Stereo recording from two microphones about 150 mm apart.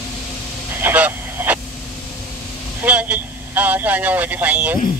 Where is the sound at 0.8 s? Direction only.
10° right (ahead or behind).